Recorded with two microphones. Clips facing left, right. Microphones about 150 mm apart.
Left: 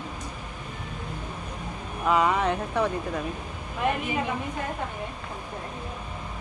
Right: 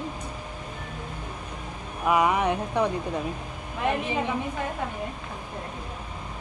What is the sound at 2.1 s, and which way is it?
Speech, 15° right (ahead or behind).